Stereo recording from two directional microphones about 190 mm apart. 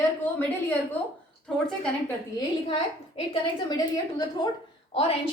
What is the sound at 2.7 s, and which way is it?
A woman's voice, 30° left (ahead or behind).